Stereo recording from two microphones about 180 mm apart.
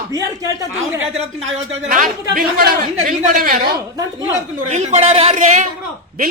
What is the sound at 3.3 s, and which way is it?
A woman's voice, 45° right (ahead or behind).